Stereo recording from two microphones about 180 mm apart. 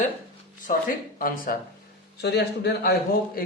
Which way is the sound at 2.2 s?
70° left (ahead or behind).